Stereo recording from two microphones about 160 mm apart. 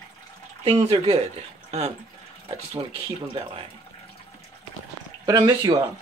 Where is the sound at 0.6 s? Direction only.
40° right (ahead or behind).